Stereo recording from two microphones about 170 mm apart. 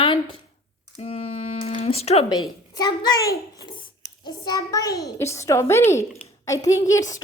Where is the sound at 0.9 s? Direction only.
35° left (ahead or behind).